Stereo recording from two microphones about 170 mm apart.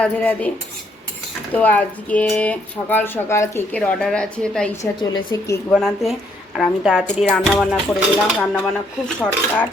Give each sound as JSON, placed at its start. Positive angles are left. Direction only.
{"t": 0.0, "sound": "speech", "side_deg": 10}
{"t": 1.5, "sound": "speech", "side_deg": 10}
{"t": 4.9, "sound": "a woman's voice", "side_deg": 20}
{"t": 5.7, "sound": "music", "side_deg": 0}